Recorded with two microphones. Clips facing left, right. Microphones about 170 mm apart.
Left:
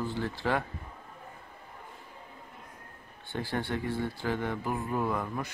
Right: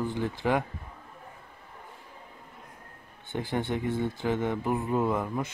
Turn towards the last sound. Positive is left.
turn(degrees=-20)  # may be behind; listen again after turning